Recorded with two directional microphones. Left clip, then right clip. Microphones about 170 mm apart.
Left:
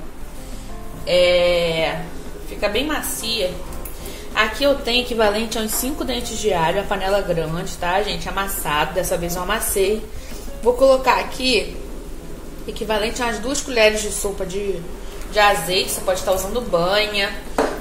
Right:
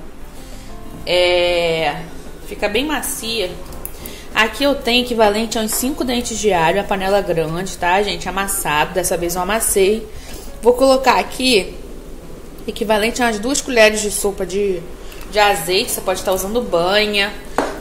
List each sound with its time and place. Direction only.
1.0 s a sound: 50° right (ahead or behind)
2.6 s a woman's voice: 40° right (ahead or behind)
12.6 s a woman's voice: 35° right (ahead or behind)
15.3 s a woman's voice: 50° right (ahead or behind)